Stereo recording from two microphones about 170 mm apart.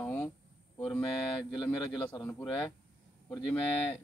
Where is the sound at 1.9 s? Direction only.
25° left (ahead or behind).